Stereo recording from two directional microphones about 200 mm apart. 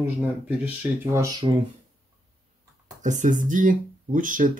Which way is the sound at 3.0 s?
40° right (ahead or behind).